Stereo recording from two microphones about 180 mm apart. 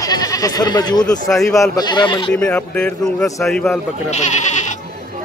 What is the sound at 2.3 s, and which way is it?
A man's voice, 5° left (ahead or behind).